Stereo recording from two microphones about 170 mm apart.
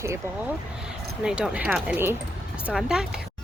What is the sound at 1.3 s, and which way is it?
Speech, 5° right (ahead or behind).